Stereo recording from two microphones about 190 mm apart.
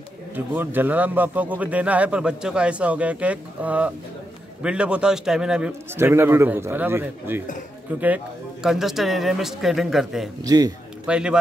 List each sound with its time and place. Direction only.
0.6 s a man's voice: 10° right (ahead or behind)
10.4 s a man's voice: 20° right (ahead or behind)
11.1 s speech: 5° right (ahead or behind)